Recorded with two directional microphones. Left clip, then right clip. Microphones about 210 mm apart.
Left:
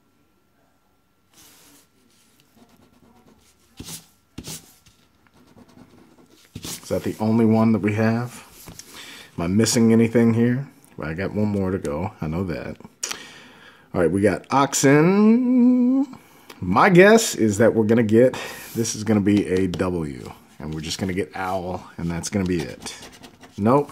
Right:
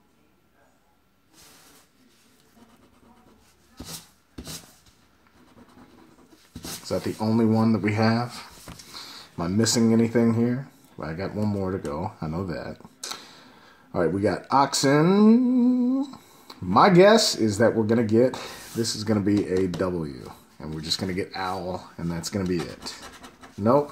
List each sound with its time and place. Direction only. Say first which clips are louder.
6.9 s speech: left 3 dB; 35° left (ahead or behind); by 8.5 s 20° left (ahead or behind)
9.0 s speech: left 3 dB; 30° left (ahead or behind)